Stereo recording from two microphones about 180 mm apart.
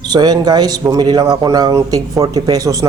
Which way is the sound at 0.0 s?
20° right (ahead or behind).